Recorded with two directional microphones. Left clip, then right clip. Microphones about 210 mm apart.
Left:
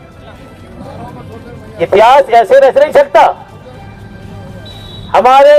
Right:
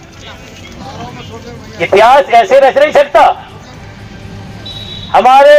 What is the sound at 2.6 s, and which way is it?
Speech, 25° left (ahead or behind).